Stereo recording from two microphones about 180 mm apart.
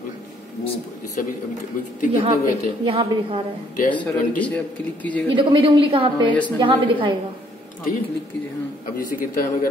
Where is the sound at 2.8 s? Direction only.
30° right (ahead or behind).